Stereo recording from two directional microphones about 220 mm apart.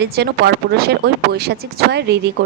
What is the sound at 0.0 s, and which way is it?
Speech, 50° right (ahead or behind).